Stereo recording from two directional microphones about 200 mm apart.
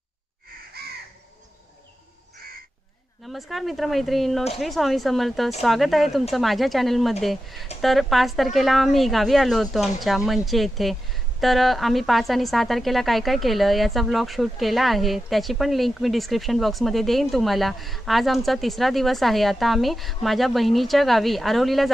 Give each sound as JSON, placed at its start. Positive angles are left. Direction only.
{"t": 0.8, "sound": "crow", "side_deg": -50}
{"t": 3.3, "sound": "speech", "side_deg": 0}